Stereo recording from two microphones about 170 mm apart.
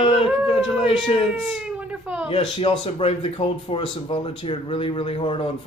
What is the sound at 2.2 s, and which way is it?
Speech, 35° left (ahead or behind).